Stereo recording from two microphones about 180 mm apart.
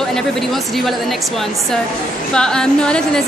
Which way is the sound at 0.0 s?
Centre (ahead or behind).